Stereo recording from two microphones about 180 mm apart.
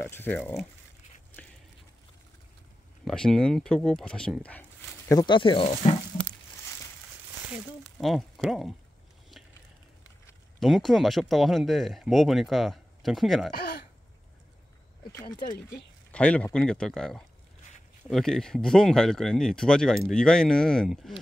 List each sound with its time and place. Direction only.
0.0 s speech: 10° left (ahead or behind)
3.1 s speech: 5° left (ahead or behind)
5.1 s speech: 25° left (ahead or behind)
7.8 s speech: centre (ahead or behind)
10.6 s speech: centre (ahead or behind)
16.1 s speech: 5° left (ahead or behind)